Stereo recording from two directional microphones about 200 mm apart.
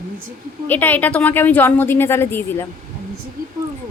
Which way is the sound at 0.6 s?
10° left (ahead or behind).